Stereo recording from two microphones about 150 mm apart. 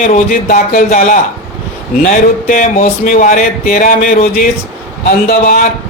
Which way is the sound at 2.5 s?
65° left (ahead or behind).